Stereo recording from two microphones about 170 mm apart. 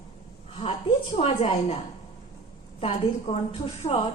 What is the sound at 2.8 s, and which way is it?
A woman's voice, 35° left (ahead or behind).